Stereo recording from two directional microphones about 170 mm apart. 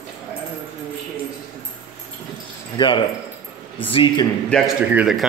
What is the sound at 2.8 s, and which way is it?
Speech, 30° left (ahead or behind).